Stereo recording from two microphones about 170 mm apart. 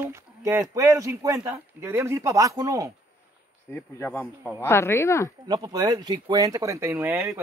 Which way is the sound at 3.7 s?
15° left (ahead or behind).